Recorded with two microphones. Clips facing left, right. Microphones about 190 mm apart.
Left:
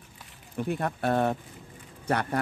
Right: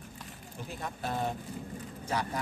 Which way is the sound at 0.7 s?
65° left (ahead or behind).